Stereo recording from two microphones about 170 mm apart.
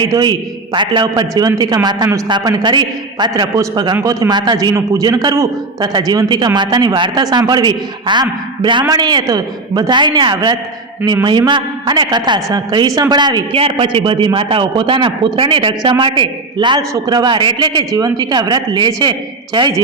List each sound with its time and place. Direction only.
0.0 s a man's voice: 20° right (ahead or behind)